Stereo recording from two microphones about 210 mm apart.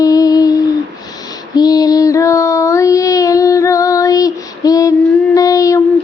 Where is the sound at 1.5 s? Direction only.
20° left (ahead or behind).